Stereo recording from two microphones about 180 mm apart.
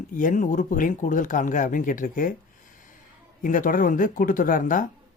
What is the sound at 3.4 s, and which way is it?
Speech, 50° left (ahead or behind).